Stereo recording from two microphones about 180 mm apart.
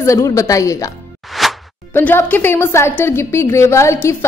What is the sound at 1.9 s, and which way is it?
A woman's voice, 10° left (ahead or behind).